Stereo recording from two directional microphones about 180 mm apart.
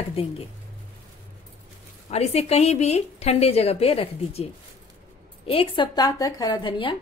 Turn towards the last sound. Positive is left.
turn(degrees=25)  # may be behind; listen again after turning